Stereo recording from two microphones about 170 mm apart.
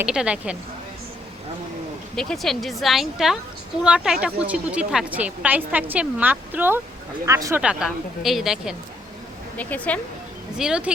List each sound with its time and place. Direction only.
0.0 s a woman's voice: 5° right (ahead or behind)
2.1 s a woman's voice: centre (ahead or behind); by 7.6 s 15° right (ahead or behind)
7.6 s speech: 5° right (ahead or behind)
9.6 s speech: 10° left (ahead or behind)
10.6 s speech: 5° right (ahead or behind)